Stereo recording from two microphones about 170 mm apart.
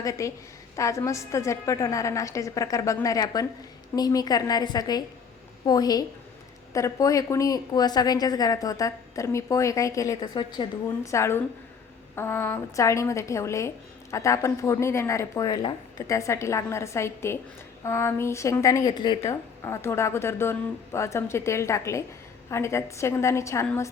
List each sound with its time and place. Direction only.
0.0 s a woman's voice: 20° left (ahead or behind)